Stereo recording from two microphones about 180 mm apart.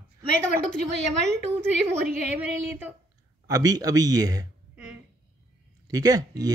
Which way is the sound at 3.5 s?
20° right (ahead or behind).